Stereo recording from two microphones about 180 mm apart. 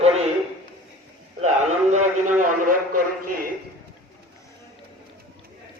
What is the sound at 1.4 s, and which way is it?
A man's voice, 40° right (ahead or behind).